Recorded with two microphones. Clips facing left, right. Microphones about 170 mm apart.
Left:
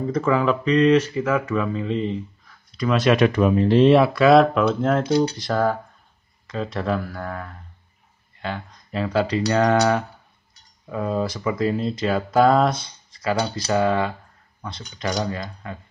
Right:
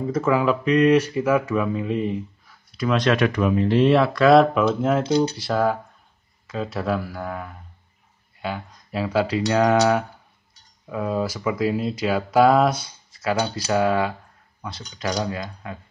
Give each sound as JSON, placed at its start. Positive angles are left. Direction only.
{"t": 0.0, "sound": "speech", "side_deg": -5}
{"t": 3.2, "sound": "speech", "side_deg": 30}
{"t": 3.9, "sound": "speech", "side_deg": 15}
{"t": 4.2, "sound": "speech", "side_deg": 0}
{"t": 5.0, "sound": "speech", "side_deg": -25}
{"t": 5.3, "sound": "speech", "side_deg": -5}